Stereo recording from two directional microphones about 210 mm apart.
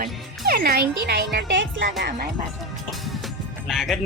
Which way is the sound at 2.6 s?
Centre (ahead or behind).